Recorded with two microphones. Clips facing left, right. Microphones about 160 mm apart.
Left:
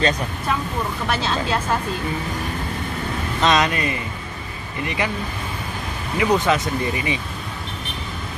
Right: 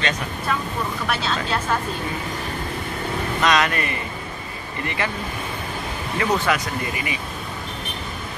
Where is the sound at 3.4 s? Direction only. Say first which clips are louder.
Left 2 dB; 20° left (ahead or behind).